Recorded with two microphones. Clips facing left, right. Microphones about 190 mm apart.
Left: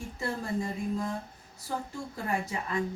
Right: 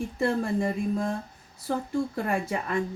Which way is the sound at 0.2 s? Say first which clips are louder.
Right 7 dB; 60° right (ahead or behind).